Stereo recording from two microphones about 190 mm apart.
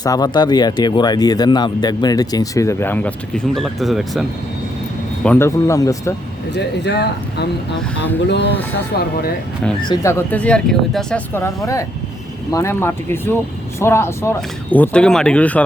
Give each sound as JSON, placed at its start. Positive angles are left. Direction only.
{"t": 0.0, "sound": "speech", "side_deg": 20}
{"t": 5.2, "sound": "speech", "side_deg": 10}
{"t": 6.5, "sound": "speech", "side_deg": 60}
{"t": 9.8, "sound": "speech", "side_deg": 20}
{"t": 11.3, "sound": "speech", "side_deg": 15}